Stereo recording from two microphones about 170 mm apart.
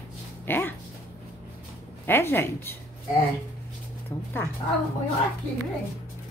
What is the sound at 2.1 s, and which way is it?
Speech, 15° left (ahead or behind).